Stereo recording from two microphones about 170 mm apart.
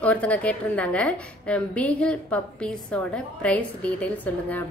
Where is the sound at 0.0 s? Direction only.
10° left (ahead or behind).